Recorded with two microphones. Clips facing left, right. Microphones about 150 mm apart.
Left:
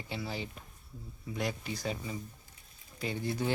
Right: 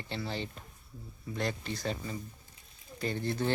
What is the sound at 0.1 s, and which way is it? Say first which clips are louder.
A child's voice: right 1 dB; 5° left (ahead or behind).